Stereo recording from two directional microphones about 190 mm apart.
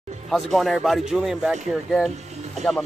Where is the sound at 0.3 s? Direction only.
Centre (ahead or behind).